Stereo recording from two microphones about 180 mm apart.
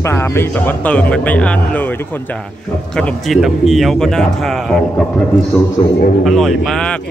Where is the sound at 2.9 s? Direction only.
Centre (ahead or behind).